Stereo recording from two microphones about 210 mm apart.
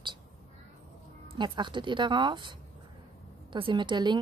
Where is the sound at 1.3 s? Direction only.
20° right (ahead or behind).